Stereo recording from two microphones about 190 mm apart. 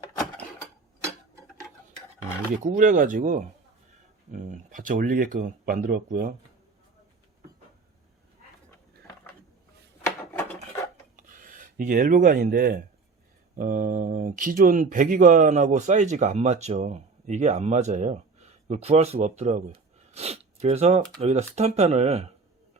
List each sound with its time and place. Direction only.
2.7 s speech: 45° right (ahead or behind)
11.2 s speech: 45° right (ahead or behind)